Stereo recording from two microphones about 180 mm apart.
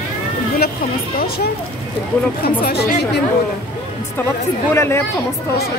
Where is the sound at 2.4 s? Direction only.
60° left (ahead or behind).